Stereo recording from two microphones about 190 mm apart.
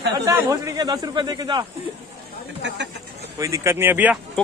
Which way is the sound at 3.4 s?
15° right (ahead or behind).